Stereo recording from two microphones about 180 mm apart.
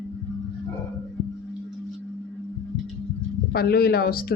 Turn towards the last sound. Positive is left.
turn(degrees=55)  # may be behind; listen again after turning